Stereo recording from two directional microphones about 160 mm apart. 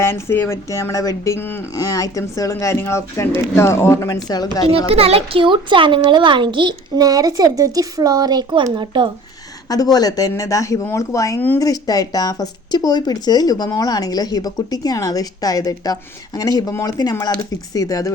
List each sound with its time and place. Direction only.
0.0 s speech: 15° left (ahead or behind)
4.9 s a child's voice: 35° right (ahead or behind)
9.6 s speech: 25° left (ahead or behind)